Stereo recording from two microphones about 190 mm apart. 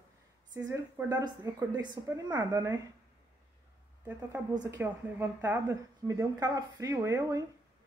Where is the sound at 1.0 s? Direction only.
20° right (ahead or behind).